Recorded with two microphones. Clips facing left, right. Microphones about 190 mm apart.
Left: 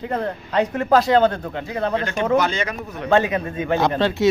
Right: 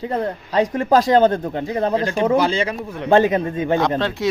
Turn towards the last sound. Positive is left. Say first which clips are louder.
# left 3 dB
turn(degrees=0)  # may be behind; listen again after turning